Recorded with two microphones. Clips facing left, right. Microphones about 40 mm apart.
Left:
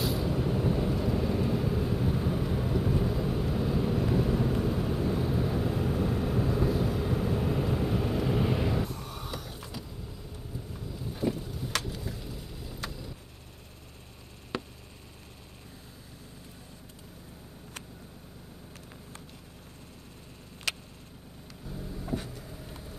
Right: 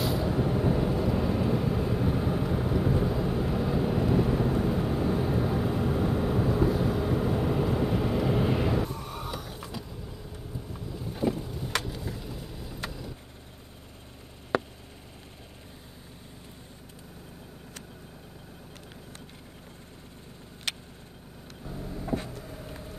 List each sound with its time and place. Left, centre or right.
0.0 s vehicle: centre
21.6 s vehicle: right